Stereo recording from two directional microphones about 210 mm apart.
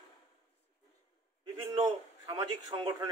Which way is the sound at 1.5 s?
20° right (ahead or behind).